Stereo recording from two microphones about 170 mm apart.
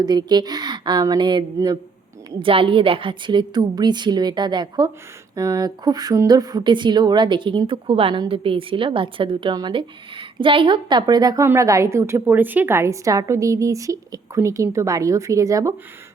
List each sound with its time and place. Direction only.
0.0 s a woman's voice: 25° right (ahead or behind)